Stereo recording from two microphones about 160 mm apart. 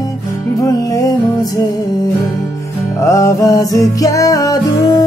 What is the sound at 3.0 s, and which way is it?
Music, 20° left (ahead or behind).